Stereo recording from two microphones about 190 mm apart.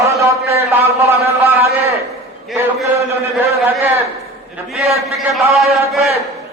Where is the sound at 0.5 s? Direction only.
15° right (ahead or behind).